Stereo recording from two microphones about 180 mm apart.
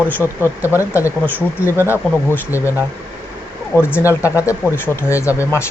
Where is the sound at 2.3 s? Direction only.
15° left (ahead or behind).